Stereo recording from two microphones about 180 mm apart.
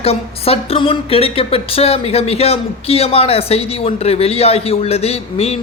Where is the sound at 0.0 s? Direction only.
35° left (ahead or behind).